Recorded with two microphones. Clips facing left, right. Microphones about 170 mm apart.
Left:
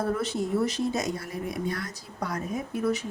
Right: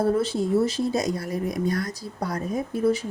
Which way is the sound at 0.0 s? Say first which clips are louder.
Right 5 dB; 30° right (ahead or behind).